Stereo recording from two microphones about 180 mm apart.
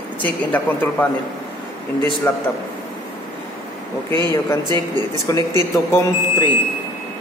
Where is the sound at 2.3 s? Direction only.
10° left (ahead or behind).